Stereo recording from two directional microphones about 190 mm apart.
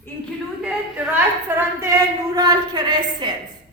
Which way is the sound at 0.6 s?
5° right (ahead or behind).